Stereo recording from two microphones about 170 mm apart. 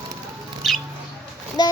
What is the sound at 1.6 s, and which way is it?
Speech, 25° left (ahead or behind).